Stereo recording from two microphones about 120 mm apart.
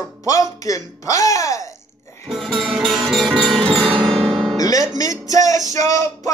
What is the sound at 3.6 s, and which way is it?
Music, 45° right (ahead or behind).